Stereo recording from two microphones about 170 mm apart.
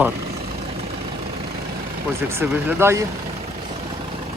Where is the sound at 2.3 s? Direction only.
10° right (ahead or behind).